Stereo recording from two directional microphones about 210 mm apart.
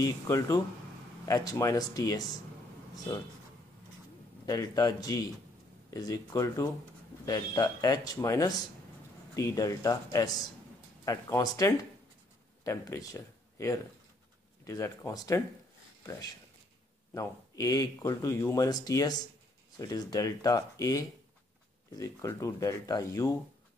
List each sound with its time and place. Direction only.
0.0 s speech: 15° left (ahead or behind)
4.5 s speech: 15° left (ahead or behind)